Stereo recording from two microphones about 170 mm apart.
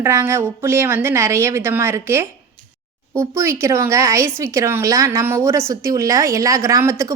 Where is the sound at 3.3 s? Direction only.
15° right (ahead or behind).